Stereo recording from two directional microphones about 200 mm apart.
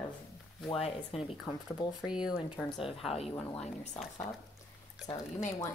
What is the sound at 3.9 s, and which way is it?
Speech, 5° left (ahead or behind).